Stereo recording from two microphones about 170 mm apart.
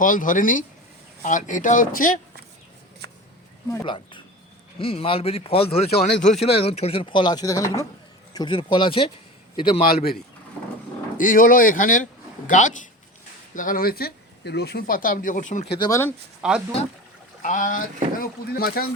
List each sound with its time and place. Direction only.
0.0 s speech: 50° left (ahead or behind)
3.8 s speech: 30° left (ahead or behind)
6.1 s speech: 5° left (ahead or behind)
6.4 s speech: 35° left (ahead or behind)
9.8 s speech: 65° left (ahead or behind)
11.2 s speech: 55° left (ahead or behind)
15.7 s speech: 25° left (ahead or behind)
16.4 s speech: 5° right (ahead or behind)
17.4 s speech: 50° left (ahead or behind)